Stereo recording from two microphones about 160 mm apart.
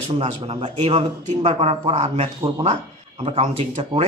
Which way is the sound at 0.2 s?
35° right (ahead or behind).